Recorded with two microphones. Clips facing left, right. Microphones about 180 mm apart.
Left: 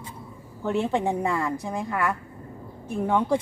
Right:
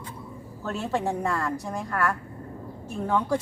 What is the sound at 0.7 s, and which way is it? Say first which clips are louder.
A woman's voice: left 4 dB; 15° left (ahead or behind).